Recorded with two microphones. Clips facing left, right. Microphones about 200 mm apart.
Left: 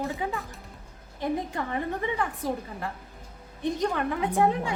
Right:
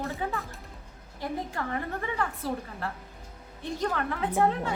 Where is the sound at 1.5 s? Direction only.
20° left (ahead or behind).